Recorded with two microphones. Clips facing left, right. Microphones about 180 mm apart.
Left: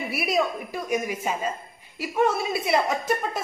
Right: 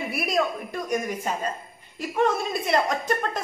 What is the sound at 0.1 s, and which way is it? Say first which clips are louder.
A man's voice: left 1 dB; 5° left (ahead or behind).